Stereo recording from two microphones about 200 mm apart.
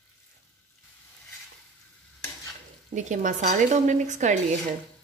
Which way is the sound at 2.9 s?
40° right (ahead or behind).